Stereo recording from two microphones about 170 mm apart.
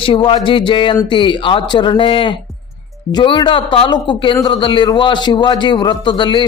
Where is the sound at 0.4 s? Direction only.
30° left (ahead or behind).